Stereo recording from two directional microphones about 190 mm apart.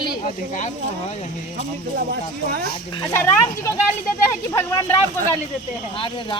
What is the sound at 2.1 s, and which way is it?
Speech, 55° right (ahead or behind).